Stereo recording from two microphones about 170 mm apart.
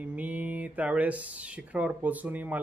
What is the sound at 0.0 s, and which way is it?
Speech, 10° right (ahead or behind).